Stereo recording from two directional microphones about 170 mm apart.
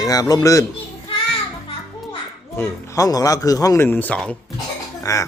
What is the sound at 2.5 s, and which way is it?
Speech, 15° left (ahead or behind).